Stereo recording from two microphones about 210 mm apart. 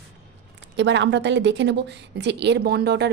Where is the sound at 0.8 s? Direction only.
55° right (ahead or behind).